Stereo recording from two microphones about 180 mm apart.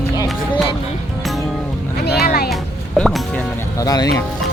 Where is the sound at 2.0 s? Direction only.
60° left (ahead or behind).